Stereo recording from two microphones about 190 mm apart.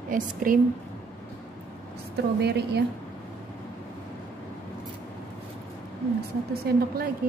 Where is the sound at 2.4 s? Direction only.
60° right (ahead or behind).